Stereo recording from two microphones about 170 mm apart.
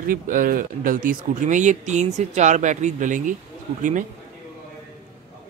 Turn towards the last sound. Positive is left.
turn(degrees=-50)  # may be behind; listen again after turning